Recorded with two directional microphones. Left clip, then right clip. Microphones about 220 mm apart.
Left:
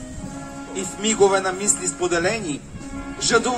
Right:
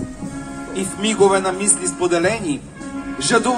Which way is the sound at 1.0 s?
50° right (ahead or behind).